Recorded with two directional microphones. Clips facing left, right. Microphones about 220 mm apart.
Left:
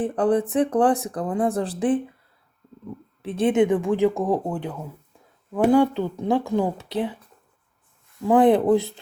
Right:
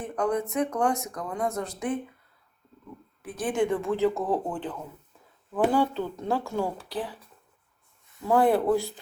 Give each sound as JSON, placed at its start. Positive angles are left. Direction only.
{"t": 0.0, "sound": "speech", "side_deg": 30}
{"t": 3.2, "sound": "speech", "side_deg": 25}
{"t": 8.3, "sound": "speech", "side_deg": 20}